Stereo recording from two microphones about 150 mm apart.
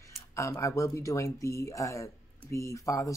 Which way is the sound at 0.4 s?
20° left (ahead or behind).